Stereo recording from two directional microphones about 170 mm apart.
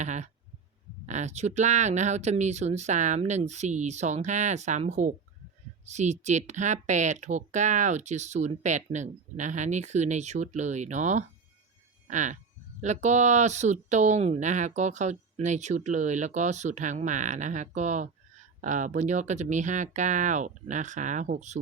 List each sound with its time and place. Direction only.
0.0 s speech: 45° right (ahead or behind)